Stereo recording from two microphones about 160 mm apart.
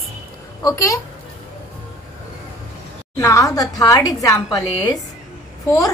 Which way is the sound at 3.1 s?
20° left (ahead or behind).